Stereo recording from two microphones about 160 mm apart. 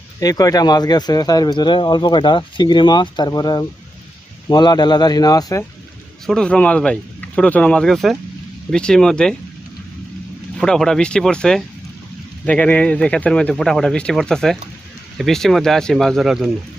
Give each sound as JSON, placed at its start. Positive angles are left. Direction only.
{"t": 0.2, "sound": "speech", "side_deg": 20}
{"t": 6.2, "sound": "speech", "side_deg": 5}
{"t": 10.6, "sound": "speech", "side_deg": 5}